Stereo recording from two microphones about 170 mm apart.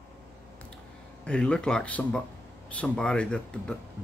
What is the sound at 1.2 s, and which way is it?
Speech, 5° left (ahead or behind).